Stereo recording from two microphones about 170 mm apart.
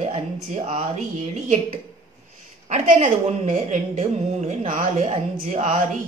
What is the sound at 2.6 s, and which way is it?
A woman's voice, 45° right (ahead or behind).